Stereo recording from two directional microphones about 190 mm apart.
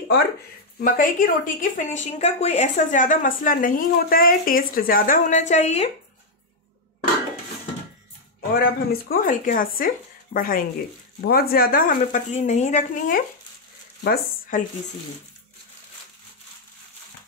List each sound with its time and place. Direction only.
0.7 s a woman's voice: 45° left (ahead or behind)
8.4 s a woman's voice: 50° left (ahead or behind)
14.0 s speech: 55° left (ahead or behind)